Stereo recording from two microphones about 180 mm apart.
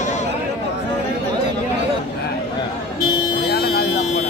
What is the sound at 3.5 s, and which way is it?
Vehicle, 65° left (ahead or behind).